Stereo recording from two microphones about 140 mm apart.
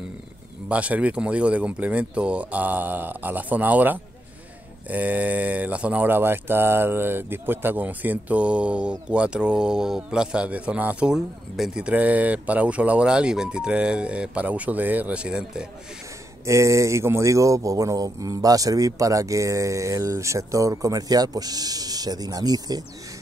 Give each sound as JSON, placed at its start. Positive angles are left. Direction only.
{"t": 0.7, "sound": "speech", "side_deg": -10}
{"t": 16.4, "sound": "speech", "side_deg": -20}